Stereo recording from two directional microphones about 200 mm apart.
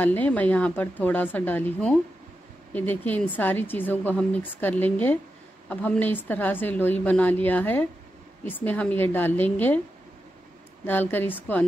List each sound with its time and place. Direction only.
0.0 s speech: 10° left (ahead or behind)
10.8 s speech: 10° left (ahead or behind)